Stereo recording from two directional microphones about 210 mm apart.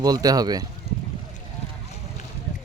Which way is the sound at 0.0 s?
20° right (ahead or behind).